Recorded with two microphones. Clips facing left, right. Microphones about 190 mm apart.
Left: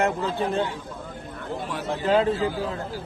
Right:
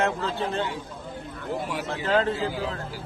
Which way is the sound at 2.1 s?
10° left (ahead or behind).